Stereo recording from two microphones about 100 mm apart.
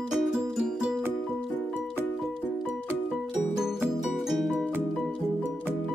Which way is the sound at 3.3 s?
5° right (ahead or behind).